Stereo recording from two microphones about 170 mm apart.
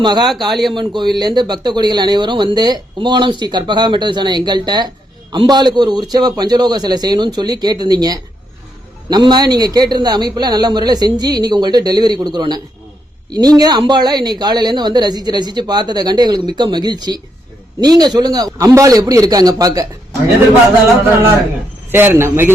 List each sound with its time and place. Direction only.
0.0 s speech: 25° right (ahead or behind)
0.4 s speech: centre (ahead or behind)
0.8 s speech: 25° right (ahead or behind)
21.9 s a man's voice: 15° right (ahead or behind)